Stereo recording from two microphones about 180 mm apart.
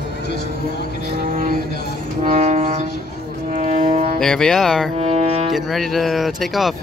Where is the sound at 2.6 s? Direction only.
50° right (ahead or behind).